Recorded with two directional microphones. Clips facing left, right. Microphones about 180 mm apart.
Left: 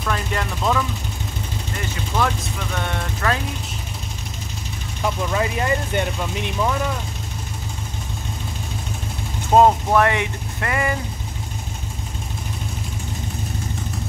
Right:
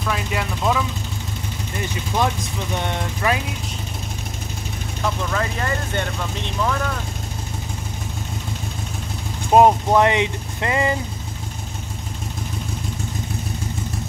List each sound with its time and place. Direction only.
0.0 s speech: 5° right (ahead or behind)
2.1 s speech: 20° right (ahead or behind)
5.3 s speech: 15° left (ahead or behind)
9.5 s speech: 15° right (ahead or behind)